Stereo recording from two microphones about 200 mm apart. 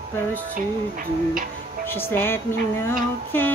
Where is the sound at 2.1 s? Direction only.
10° left (ahead or behind).